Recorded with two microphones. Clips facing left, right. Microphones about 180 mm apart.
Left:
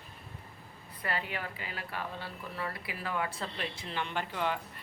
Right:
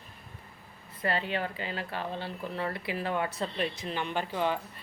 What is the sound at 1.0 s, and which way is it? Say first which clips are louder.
Speech: right 6 dB; 30° right (ahead or behind).